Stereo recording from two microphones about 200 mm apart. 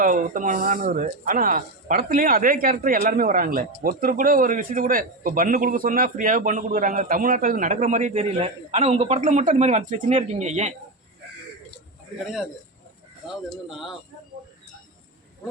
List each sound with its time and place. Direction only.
0.0 s a man's voice: 40° right (ahead or behind)
13.7 s speech: centre (ahead or behind)